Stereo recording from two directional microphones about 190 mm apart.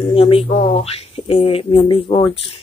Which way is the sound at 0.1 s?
30° left (ahead or behind).